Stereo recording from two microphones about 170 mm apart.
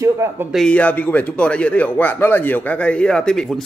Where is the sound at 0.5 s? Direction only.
5° left (ahead or behind).